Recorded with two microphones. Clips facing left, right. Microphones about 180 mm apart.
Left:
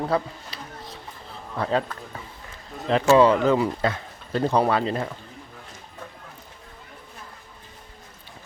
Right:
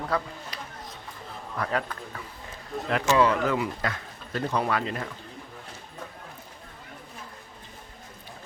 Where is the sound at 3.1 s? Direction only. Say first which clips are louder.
Left 6 dB; 30° left (ahead or behind).